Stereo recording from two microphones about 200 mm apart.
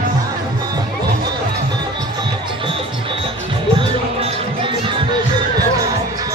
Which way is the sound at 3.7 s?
25° right (ahead or behind).